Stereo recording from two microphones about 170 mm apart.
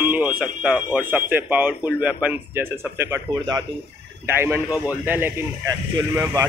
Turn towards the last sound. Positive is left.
turn(degrees=-20)  # may be behind; listen again after turning